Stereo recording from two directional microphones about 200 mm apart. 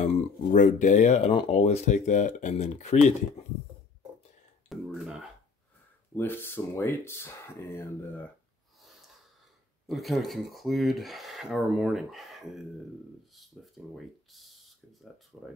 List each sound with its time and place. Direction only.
0.0 s speech: 40° left (ahead or behind)
4.6 s a sound: centre (ahead or behind)
6.1 s speech: 10° left (ahead or behind)
9.8 s speech: centre (ahead or behind)
13.9 s a sound: centre (ahead or behind)
15.3 s speech: 5° right (ahead or behind)